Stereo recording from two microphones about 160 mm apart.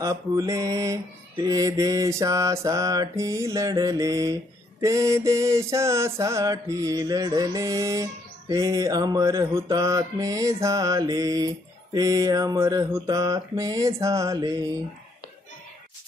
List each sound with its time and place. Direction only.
0.0 s mantra: 20° right (ahead or behind)